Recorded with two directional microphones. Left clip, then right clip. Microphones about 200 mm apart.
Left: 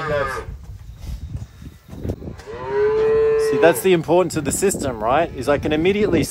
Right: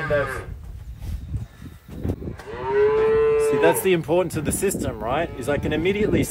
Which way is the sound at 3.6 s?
45° left (ahead or behind).